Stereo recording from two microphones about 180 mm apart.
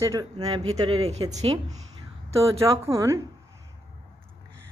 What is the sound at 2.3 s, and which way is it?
Speech, 15° right (ahead or behind).